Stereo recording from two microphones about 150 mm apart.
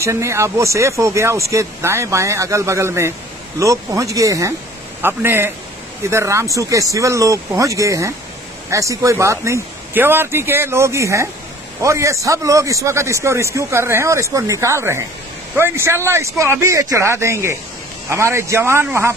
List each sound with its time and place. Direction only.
0.0 s a man's voice: 20° right (ahead or behind)